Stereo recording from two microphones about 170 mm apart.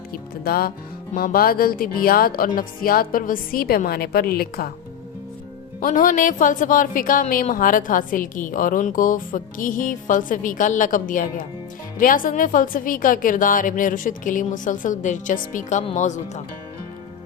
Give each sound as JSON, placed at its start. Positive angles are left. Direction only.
{"t": 0.4, "sound": "speech", "side_deg": 65}
{"t": 5.8, "sound": "a woman's voice", "side_deg": 50}